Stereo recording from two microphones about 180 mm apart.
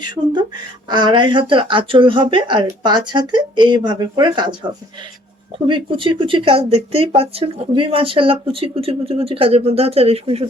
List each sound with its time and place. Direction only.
0.0 s speech: 25° right (ahead or behind)
5.6 s speech: 25° right (ahead or behind)